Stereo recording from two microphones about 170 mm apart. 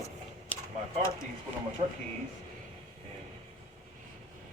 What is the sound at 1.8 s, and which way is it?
Speech, 40° right (ahead or behind).